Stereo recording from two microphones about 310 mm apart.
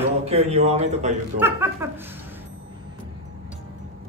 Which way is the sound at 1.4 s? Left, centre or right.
Centre.